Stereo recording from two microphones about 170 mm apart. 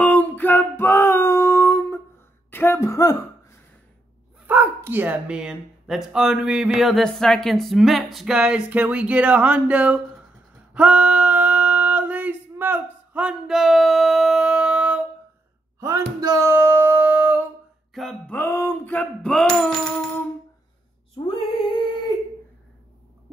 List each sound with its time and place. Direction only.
0.0 s music: 10° left (ahead or behind)
2.5 s speech: 15° left (ahead or behind)
4.5 s speech: 10° right (ahead or behind)
10.7 s a sound: 5° right (ahead or behind)
15.8 s a sound: 20° right (ahead or behind)
17.9 s music: 5° left (ahead or behind)
21.3 s female singing: 35° left (ahead or behind)